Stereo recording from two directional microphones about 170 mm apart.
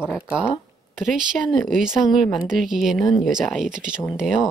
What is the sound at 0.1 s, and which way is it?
Speech, 5° right (ahead or behind).